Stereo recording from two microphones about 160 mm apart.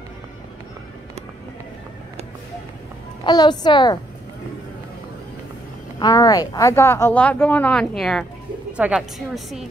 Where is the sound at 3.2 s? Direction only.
25° left (ahead or behind).